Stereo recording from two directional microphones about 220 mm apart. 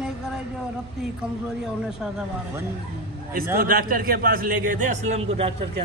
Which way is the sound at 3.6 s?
40° right (ahead or behind).